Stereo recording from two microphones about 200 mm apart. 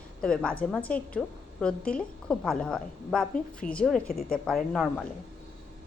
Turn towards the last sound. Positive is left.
turn(degrees=5)  # may be behind; listen again after turning